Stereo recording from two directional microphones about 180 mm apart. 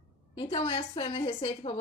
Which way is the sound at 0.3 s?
30° left (ahead or behind).